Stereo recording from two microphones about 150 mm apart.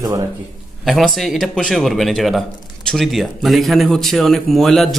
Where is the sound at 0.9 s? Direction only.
Centre (ahead or behind).